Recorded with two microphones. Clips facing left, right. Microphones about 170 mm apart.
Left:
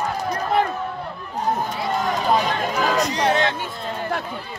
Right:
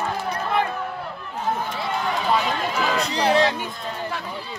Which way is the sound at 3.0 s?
30° right (ahead or behind).